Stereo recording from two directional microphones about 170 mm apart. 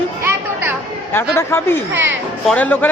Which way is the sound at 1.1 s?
15° left (ahead or behind).